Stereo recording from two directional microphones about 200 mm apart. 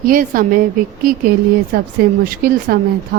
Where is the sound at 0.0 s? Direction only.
45° right (ahead or behind).